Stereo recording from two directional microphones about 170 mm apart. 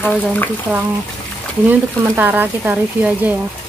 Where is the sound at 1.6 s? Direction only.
10° right (ahead or behind).